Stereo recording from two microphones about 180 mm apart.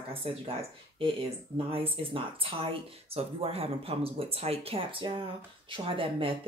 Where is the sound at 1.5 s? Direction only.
30° right (ahead or behind).